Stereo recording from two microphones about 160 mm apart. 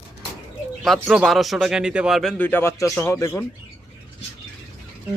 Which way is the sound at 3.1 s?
20° left (ahead or behind).